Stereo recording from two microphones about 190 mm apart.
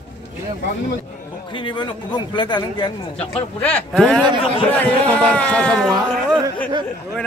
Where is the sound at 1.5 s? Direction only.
25° left (ahead or behind).